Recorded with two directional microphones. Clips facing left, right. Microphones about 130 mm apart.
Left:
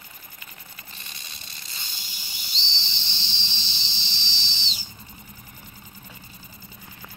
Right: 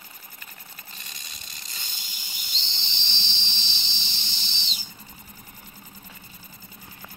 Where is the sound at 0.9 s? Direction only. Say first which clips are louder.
Left 1 dB; 40° right (ahead or behind).